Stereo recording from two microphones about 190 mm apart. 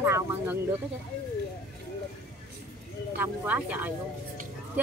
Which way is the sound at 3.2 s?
10° right (ahead or behind).